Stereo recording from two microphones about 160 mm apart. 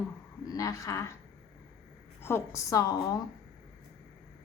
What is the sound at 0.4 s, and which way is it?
Speech, 20° left (ahead or behind).